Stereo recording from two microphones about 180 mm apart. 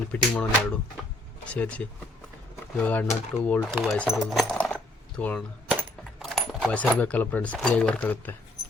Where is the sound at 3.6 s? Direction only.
5° right (ahead or behind).